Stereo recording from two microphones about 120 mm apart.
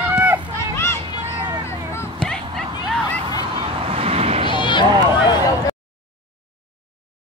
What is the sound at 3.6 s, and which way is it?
Vehicle, 50° right (ahead or behind).